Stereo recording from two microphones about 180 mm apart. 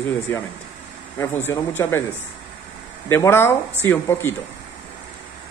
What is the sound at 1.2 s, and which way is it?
Speech, 15° left (ahead or behind).